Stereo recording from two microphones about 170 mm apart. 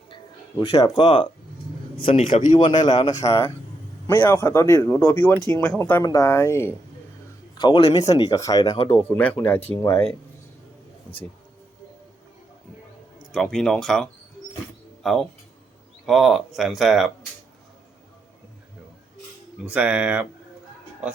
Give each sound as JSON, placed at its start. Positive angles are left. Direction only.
{"t": 0.1, "sound": "a man's voice", "side_deg": 30}
{"t": 7.6, "sound": "speech", "side_deg": 30}
{"t": 8.0, "sound": "speech", "side_deg": 20}
{"t": 9.0, "sound": "a man's voice", "side_deg": 10}
{"t": 13.3, "sound": "speech", "side_deg": 5}
{"t": 19.6, "sound": "speech", "side_deg": -10}